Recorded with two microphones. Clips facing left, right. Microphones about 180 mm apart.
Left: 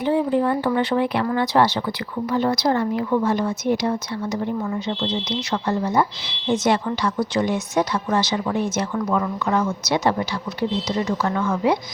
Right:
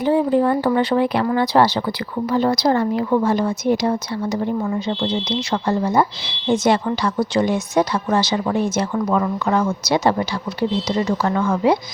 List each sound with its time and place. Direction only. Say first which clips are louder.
0.0 s speech: right 3 dB; 40° right (ahead or behind)